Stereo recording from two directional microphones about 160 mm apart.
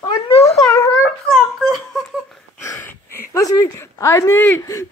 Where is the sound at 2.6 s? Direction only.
15° left (ahead or behind).